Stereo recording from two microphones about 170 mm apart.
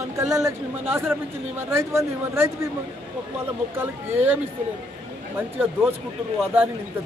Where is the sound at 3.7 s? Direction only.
10° right (ahead or behind).